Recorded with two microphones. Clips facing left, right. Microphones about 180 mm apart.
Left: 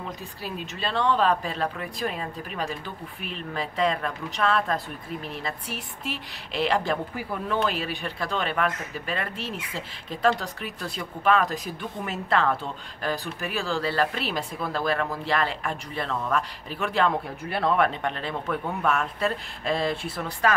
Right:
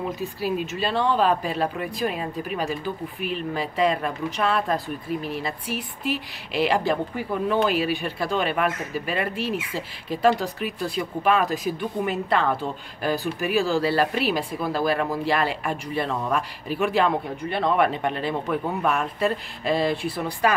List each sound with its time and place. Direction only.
0.4 s speech: 5° right (ahead or behind)